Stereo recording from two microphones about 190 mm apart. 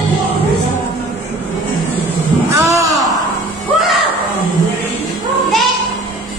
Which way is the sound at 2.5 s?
15° right (ahead or behind).